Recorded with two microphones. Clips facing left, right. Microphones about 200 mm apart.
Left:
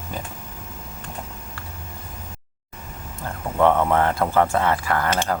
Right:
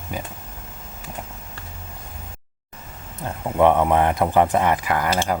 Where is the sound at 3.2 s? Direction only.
15° right (ahead or behind).